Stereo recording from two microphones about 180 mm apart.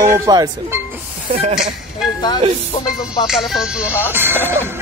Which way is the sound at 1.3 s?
35° right (ahead or behind).